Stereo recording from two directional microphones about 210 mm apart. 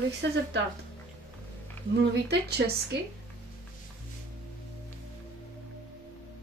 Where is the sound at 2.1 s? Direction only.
50° right (ahead or behind).